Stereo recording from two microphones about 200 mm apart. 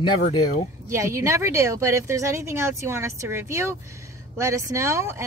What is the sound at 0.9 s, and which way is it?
Speech, 15° right (ahead or behind).